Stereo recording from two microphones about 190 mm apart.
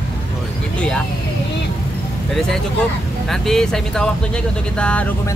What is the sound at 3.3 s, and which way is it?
Speech, centre (ahead or behind).